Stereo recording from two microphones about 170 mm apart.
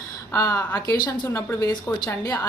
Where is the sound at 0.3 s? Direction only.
15° left (ahead or behind).